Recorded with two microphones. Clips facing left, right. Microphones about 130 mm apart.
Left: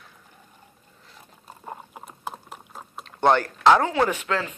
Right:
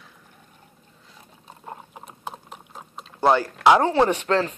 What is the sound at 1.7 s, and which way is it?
Typing, centre (ahead or behind).